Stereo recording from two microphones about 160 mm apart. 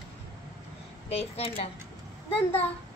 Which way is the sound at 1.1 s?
40° left (ahead or behind).